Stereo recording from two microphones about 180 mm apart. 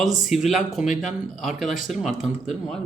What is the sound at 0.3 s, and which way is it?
Speech, centre (ahead or behind).